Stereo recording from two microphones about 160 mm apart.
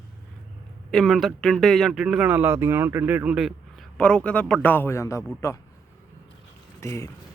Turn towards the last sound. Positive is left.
turn(degrees=20)  # may be behind; listen again after turning